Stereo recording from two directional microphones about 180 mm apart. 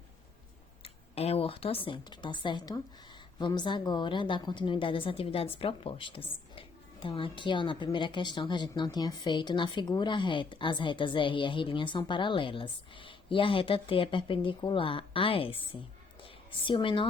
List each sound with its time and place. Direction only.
0.8 s a woman's voice: 35° left (ahead or behind)